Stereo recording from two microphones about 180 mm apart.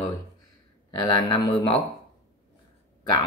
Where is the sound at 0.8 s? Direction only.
25° left (ahead or behind).